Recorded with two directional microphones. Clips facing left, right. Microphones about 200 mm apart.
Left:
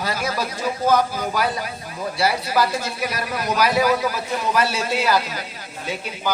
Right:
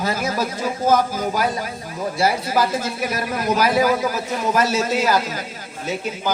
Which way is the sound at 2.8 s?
45° right (ahead or behind).